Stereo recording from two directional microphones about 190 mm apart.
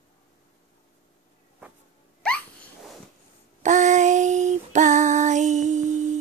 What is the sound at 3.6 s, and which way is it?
Female singing, 40° right (ahead or behind).